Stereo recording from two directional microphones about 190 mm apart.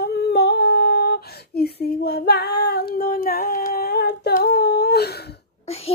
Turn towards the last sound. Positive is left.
turn(degrees=30)  # may be behind; listen again after turning